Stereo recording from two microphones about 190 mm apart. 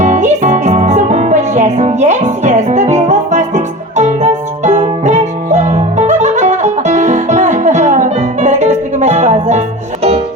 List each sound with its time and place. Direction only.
0.0 s music: 40° right (ahead or behind)